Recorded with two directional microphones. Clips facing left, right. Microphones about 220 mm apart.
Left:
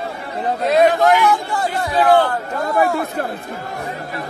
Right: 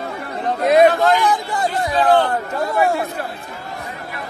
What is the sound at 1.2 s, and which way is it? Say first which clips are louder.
Speech: left 1 dB; 15° right (ahead or behind).